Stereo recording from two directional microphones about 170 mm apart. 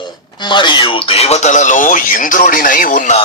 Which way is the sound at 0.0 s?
25° left (ahead or behind).